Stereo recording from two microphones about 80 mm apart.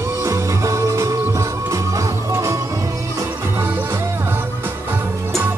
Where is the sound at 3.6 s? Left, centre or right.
Right.